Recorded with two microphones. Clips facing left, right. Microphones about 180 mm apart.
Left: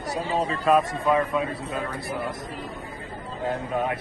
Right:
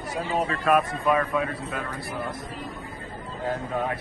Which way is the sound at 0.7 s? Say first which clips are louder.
Left 2 dB; 20° left (ahead or behind).